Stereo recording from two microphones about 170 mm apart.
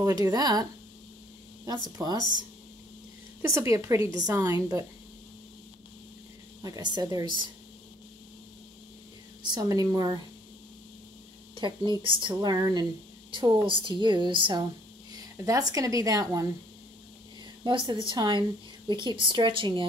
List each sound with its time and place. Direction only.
0.0 s a woman's voice: 20° right (ahead or behind)
1.9 s a woman's voice: 20° right (ahead or behind)
3.4 s a woman's voice: 20° right (ahead or behind)
6.6 s a woman's voice: 25° right (ahead or behind)
9.5 s a woman's voice: 20° right (ahead or behind)
11.5 s a woman's voice: 25° right (ahead or behind)
17.6 s a woman's voice: 25° right (ahead or behind)